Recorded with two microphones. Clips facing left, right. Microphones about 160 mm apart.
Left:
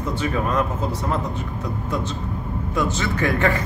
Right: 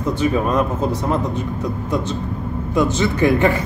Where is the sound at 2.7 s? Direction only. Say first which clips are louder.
Right 6 dB; 15° right (ahead or behind).